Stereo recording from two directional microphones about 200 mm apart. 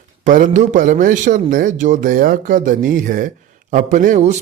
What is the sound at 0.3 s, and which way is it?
A man's voice, 40° right (ahead or behind).